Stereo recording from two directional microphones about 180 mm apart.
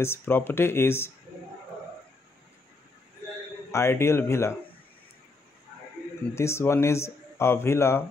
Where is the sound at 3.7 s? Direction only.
15° left (ahead or behind).